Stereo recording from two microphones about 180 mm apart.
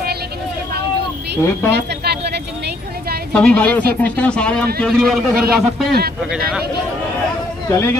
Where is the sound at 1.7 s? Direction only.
65° right (ahead or behind).